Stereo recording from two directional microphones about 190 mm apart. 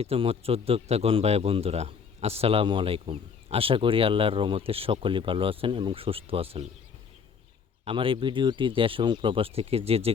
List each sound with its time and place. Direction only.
0.0 s speech: 30° right (ahead or behind)
7.9 s speech: 25° right (ahead or behind)